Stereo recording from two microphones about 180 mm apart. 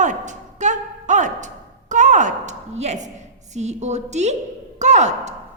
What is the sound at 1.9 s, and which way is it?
A woman's voice, 45° right (ahead or behind).